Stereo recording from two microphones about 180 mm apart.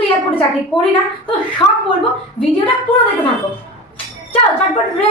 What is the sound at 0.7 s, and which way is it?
Speech, 5° left (ahead or behind).